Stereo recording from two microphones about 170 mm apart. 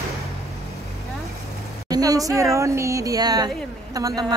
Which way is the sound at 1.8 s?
20° right (ahead or behind).